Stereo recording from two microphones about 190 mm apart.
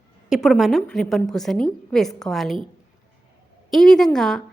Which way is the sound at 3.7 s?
Centre (ahead or behind).